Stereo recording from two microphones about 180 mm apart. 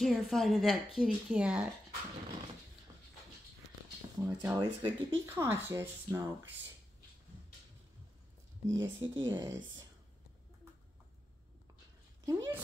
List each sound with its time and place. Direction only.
0.0 s speech: centre (ahead or behind)
4.2 s speech: 15° right (ahead or behind)
8.6 s speech: 25° right (ahead or behind)
12.3 s speech: 20° right (ahead or behind)